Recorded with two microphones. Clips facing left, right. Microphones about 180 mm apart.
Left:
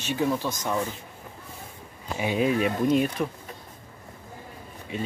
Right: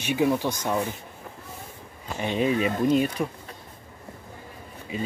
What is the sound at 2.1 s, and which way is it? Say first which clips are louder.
Speech: even; 5° left (ahead or behind).